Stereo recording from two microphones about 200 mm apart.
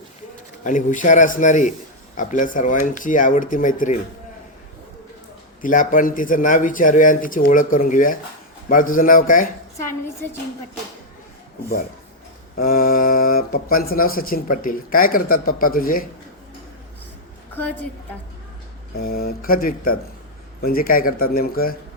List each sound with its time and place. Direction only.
0.6 s a man's voice: 40° left (ahead or behind)
5.6 s a man's voice: 40° left (ahead or behind)
12.5 s speech: 45° left (ahead or behind)
17.5 s a woman's voice: 10° left (ahead or behind)
18.9 s speech: 50° left (ahead or behind)